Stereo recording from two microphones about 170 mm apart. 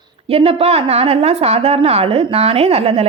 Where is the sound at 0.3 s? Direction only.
35° right (ahead or behind).